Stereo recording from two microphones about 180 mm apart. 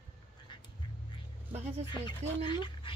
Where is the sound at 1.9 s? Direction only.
25° left (ahead or behind).